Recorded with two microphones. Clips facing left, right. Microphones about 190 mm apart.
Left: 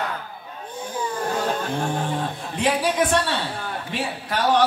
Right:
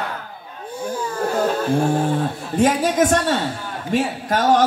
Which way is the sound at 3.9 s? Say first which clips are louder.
Right 9 dB; 45° right (ahead or behind).